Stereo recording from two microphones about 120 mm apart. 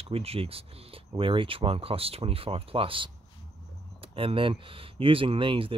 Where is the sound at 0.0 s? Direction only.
55° right (ahead or behind).